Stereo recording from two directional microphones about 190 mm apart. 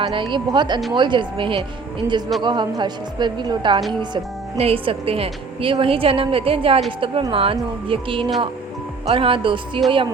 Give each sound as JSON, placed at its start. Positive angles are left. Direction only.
{"t": 0.0, "sound": "speech", "side_deg": -25}